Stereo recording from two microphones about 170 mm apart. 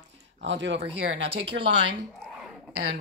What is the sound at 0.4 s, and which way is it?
Speech, 90° right.